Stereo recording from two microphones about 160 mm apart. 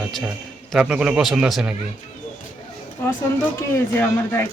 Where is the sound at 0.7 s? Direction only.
5° right (ahead or behind).